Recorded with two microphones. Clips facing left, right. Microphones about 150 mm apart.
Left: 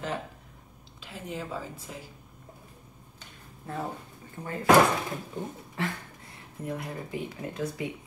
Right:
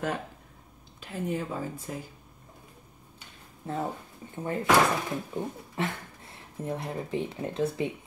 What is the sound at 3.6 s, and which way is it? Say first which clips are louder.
Speech: right 3 dB; 25° right (ahead or behind).